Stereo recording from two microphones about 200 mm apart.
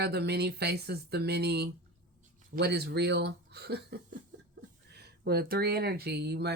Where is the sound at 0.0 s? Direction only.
55° right (ahead or behind).